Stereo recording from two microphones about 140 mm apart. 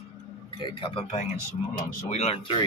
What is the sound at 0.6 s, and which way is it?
Speech, 40° left (ahead or behind).